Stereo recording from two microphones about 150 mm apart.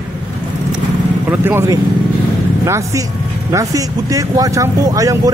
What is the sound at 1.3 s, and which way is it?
A man's voice, 15° right (ahead or behind).